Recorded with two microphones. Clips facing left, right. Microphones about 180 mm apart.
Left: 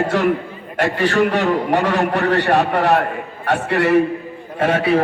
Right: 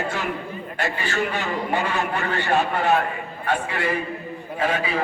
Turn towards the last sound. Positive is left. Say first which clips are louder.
# left 7 dB
turn(degrees=70)  # may be behind; listen again after turning